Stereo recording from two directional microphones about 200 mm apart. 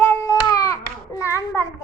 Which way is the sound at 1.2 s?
15° left (ahead or behind).